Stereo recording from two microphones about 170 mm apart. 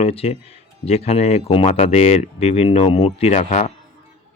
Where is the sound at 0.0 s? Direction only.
35° left (ahead or behind).